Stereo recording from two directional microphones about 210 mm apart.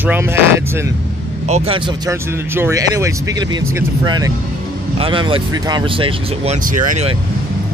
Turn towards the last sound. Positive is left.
turn(degrees=-40)  # may be behind; listen again after turning